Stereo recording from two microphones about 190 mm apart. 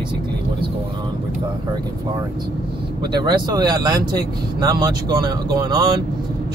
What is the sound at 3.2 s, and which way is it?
Speech, 20° right (ahead or behind).